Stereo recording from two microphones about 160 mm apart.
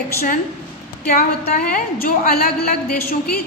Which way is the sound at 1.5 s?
65° left (ahead or behind).